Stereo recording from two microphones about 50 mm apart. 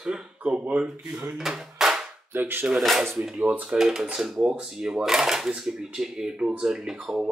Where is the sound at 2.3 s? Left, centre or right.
Right.